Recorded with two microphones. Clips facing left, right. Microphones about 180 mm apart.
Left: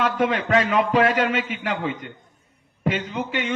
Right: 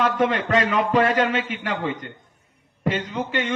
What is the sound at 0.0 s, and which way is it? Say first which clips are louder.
A man's voice: right 1 dB; 10° left (ahead or behind).